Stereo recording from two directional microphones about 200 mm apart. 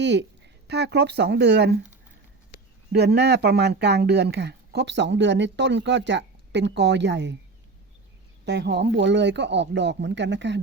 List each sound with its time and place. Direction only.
0.0 s speech: 60° right (ahead or behind)
2.9 s speech: 55° right (ahead or behind)
8.4 s speech: 55° right (ahead or behind)